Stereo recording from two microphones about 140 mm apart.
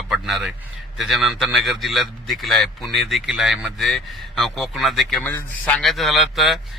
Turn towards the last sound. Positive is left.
turn(degrees=0)  # may be behind; listen again after turning